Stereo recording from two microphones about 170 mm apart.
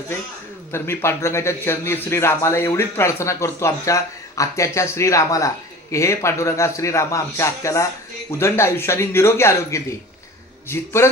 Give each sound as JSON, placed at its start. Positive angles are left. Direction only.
{"t": 0.7, "sound": "a man's voice", "side_deg": 15}